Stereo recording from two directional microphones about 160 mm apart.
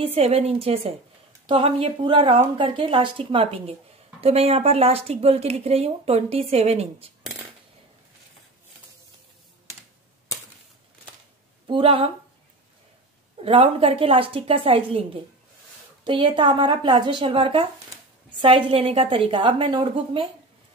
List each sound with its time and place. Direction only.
0.0 s speech: 40° right (ahead or behind)
11.6 s speech: 35° right (ahead or behind)
13.4 s speech: 35° right (ahead or behind)